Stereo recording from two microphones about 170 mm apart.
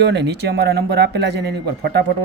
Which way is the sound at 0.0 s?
85° right.